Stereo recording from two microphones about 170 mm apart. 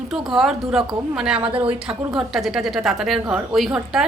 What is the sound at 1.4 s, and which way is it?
Speech, 30° right (ahead or behind).